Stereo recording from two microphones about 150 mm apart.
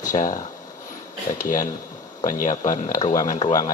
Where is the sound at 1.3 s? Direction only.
60° left (ahead or behind).